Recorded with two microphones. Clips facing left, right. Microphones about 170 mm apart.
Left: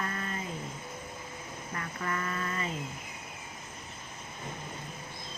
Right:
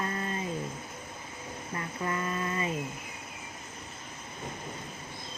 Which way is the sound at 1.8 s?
25° right (ahead or behind).